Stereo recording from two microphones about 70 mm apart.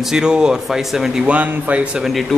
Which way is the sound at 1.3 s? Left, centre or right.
Right.